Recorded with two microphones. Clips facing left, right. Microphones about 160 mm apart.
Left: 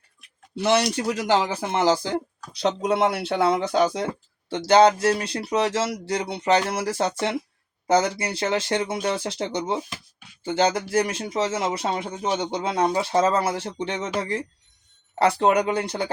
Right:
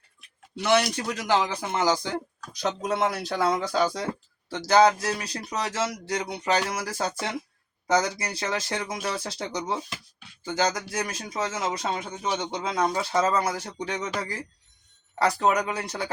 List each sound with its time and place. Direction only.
0.6 s a man's voice: 35° left (ahead or behind)